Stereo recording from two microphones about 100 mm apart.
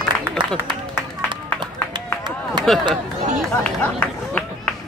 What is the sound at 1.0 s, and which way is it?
Run, 20° left (ahead or behind).